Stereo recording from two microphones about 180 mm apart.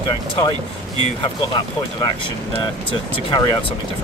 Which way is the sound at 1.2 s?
25° left (ahead or behind).